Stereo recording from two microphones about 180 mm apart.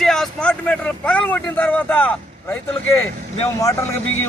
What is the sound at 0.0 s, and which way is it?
Vehicle, centre (ahead or behind).